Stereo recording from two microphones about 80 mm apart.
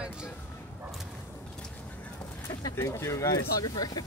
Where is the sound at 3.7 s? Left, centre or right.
Left.